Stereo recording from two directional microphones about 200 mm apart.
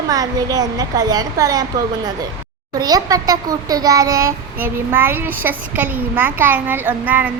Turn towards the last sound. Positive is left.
turn(degrees=-10)  # may be behind; listen again after turning